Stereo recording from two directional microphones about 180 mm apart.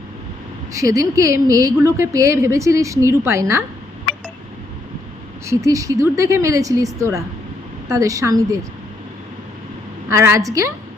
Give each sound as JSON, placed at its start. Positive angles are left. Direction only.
{"t": 0.7, "sound": "a woman's voice", "side_deg": -15}
{"t": 5.5, "sound": "a woman's voice", "side_deg": -15}
{"t": 10.1, "sound": "a woman's voice", "side_deg": -15}